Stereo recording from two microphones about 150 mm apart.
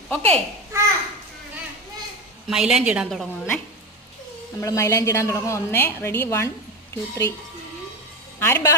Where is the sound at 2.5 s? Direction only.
5° right (ahead or behind).